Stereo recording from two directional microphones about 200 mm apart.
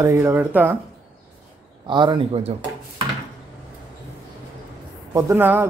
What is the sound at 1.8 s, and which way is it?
Speech, 25° right (ahead or behind).